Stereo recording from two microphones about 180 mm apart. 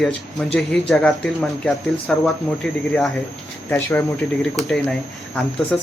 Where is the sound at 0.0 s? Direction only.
5° left (ahead or behind).